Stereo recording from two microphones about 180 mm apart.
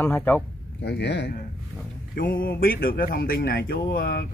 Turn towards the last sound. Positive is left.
turn(degrees=55)  # may be behind; listen again after turning